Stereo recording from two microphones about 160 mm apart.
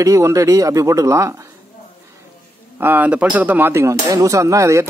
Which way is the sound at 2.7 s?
10° right (ahead or behind).